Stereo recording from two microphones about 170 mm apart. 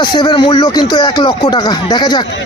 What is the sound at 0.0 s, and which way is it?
Speech, 25° left (ahead or behind).